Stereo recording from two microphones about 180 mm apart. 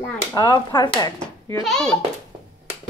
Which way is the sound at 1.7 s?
5° left (ahead or behind).